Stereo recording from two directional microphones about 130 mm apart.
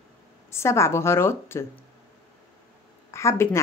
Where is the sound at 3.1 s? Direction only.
20° left (ahead or behind).